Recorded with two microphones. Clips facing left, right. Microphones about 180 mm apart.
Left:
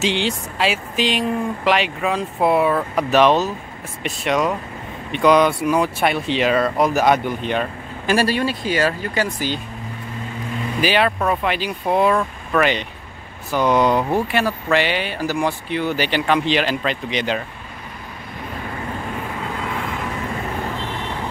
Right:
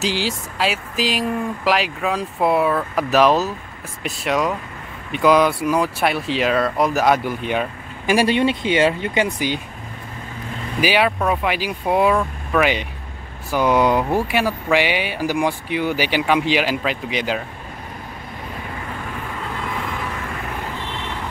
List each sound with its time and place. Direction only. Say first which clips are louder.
0.0 s speech: left 2 dB; 5° right (ahead or behind)
10.8 s speech: right 1 dB; 10° right (ahead or behind)